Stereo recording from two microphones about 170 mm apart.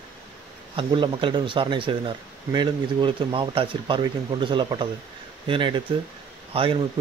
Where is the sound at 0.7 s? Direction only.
30° right (ahead or behind).